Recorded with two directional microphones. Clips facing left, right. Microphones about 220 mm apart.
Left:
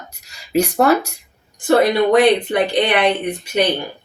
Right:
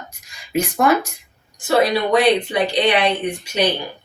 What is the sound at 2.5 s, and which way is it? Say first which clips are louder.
Speech: left 1 dB; 55° left (ahead or behind).